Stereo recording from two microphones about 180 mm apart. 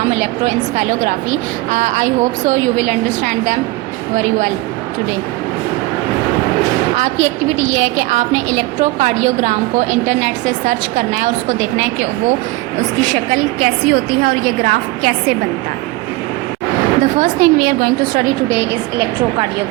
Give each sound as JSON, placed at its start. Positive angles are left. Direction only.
{"t": 0.1, "sound": "a woman's voice", "side_deg": -40}
{"t": 6.9, "sound": "a woman's voice", "side_deg": -40}
{"t": 13.0, "sound": "a woman's voice", "side_deg": -45}
{"t": 17.0, "sound": "a woman's voice", "side_deg": -50}